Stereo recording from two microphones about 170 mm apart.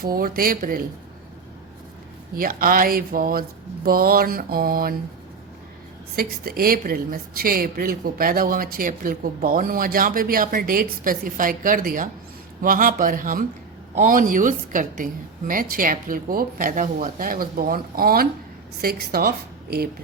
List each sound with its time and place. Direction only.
0.0 s a woman's voice: 60° right (ahead or behind)
2.3 s a woman's voice: 55° right (ahead or behind)
6.1 s a woman's voice: 60° right (ahead or behind)